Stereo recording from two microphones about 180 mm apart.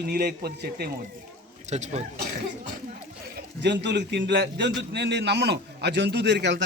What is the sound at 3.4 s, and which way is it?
A man's voice, 70° right (ahead or behind).